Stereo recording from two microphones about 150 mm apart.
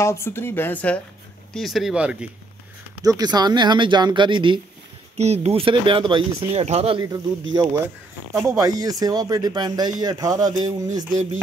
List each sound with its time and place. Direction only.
0.0 s speech: 20° left (ahead or behind); by 2.2 s 5° right (ahead or behind)
3.0 s speech: 25° right (ahead or behind)
5.1 s speech: 45° right (ahead or behind)
7.0 s speech: 25° right (ahead or behind)